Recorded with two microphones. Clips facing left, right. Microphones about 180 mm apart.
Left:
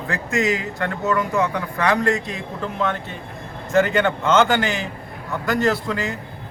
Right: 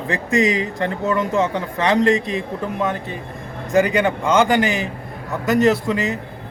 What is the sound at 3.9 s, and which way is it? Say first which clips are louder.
Speech: right 1 dB; 10° right (ahead or behind).